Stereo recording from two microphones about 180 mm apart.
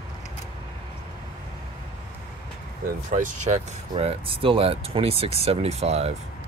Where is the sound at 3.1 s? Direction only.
45° right (ahead or behind).